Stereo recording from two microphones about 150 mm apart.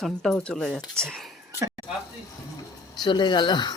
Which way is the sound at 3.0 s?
30° left (ahead or behind).